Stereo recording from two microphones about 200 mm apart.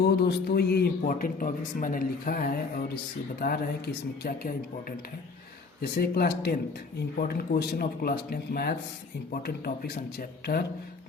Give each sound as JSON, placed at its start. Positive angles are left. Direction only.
{"t": 0.0, "sound": "speech", "side_deg": 55}